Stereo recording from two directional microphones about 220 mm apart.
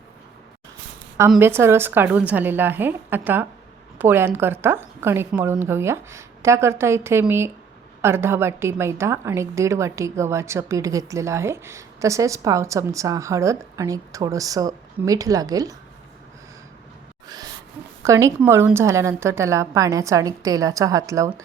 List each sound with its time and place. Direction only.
1.3 s a woman's voice: 10° right (ahead or behind)
17.2 s a sound: 20° right (ahead or behind)
18.0 s a woman's voice: 15° right (ahead or behind)